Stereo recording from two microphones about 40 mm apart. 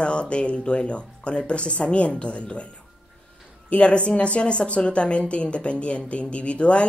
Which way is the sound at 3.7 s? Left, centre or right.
Left.